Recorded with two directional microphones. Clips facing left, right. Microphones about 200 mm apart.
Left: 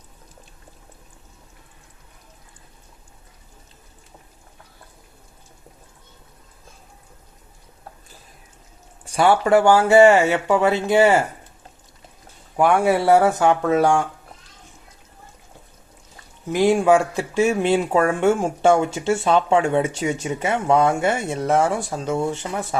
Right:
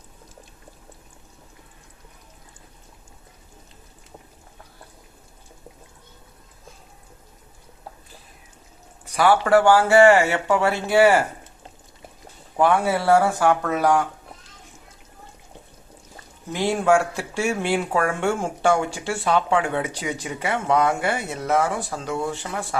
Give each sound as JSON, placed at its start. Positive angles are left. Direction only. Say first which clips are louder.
{"t": 9.0, "sound": "speech", "louder": "left 1 dB", "side_deg": 25}
{"t": 12.5, "sound": "speech", "louder": "left 3 dB", "side_deg": 15}
{"t": 16.5, "sound": "speech", "louder": "left 4 dB", "side_deg": 15}